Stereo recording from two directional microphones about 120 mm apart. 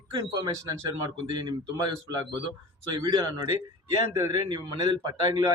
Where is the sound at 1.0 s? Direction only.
35° right (ahead or behind).